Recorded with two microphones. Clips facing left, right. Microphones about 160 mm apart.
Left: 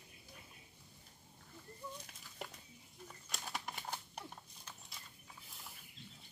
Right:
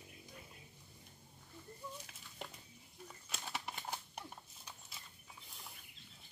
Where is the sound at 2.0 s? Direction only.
5° right (ahead or behind).